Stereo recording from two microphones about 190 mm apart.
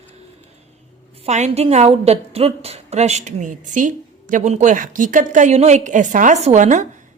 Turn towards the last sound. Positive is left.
turn(degrees=-40)  # may be behind; listen again after turning